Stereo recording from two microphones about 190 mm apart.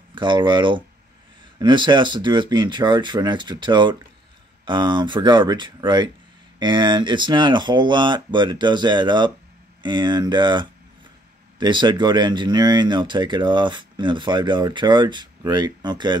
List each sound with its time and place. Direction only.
0.1 s speech: 25° right (ahead or behind)